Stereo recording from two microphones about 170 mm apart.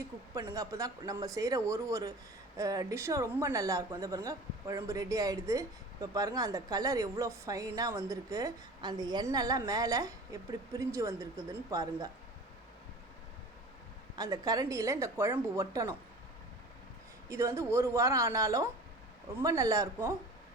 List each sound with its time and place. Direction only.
0.3 s speech: 20° right (ahead or behind)
14.2 s speech: 20° right (ahead or behind)
17.2 s a woman's voice: 15° right (ahead or behind)